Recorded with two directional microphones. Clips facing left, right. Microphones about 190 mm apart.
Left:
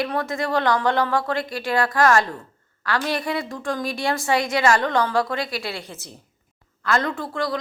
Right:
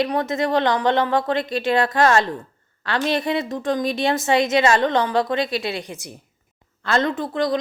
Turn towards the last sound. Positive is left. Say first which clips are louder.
# right 4 dB
turn(degrees=-20)  # may be behind; listen again after turning